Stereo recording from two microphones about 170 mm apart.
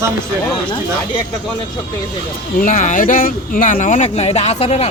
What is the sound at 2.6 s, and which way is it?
Speech, 50° left (ahead or behind).